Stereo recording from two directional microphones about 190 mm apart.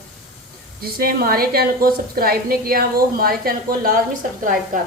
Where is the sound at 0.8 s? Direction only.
55° right (ahead or behind).